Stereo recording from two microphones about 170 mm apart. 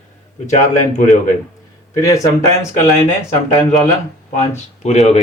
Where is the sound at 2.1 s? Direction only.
20° left (ahead or behind).